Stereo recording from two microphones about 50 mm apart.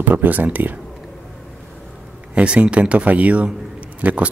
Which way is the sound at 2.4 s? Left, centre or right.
Right.